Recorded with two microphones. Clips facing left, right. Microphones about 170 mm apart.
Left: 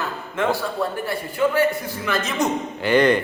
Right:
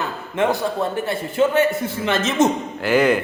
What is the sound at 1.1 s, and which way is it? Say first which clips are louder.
A man's voice: right 3 dB; 25° right (ahead or behind).